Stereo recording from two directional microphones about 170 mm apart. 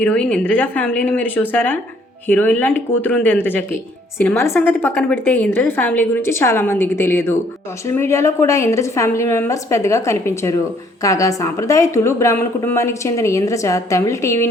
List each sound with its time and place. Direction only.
0.0 s a woman's voice: 5° left (ahead or behind)